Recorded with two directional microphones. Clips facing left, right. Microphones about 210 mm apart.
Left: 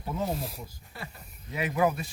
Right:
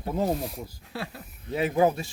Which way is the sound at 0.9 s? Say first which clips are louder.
Right 9 dB; 75° right (ahead or behind).